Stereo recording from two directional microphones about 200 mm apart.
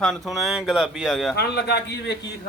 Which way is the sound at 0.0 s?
Centre (ahead or behind).